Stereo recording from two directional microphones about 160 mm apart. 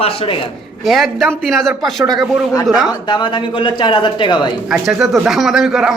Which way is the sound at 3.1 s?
30° left (ahead or behind).